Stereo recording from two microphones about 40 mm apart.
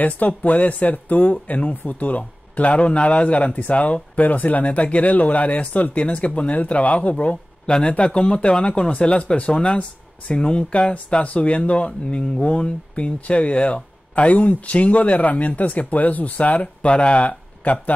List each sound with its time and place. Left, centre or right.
0.0 s speech: left
7.6 s speech: left